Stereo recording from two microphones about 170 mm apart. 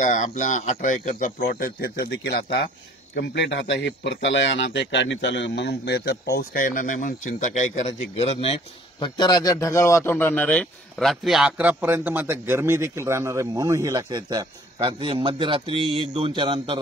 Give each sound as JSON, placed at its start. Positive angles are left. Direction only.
{"t": 0.0, "sound": "speech", "side_deg": 45}
{"t": 3.2, "sound": "speech", "side_deg": 90}
{"t": 6.3, "sound": "speech", "side_deg": 55}
{"t": 9.0, "sound": "a man's voice", "side_deg": 25}